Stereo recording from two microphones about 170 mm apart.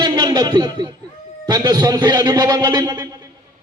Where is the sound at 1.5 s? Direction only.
25° right (ahead or behind).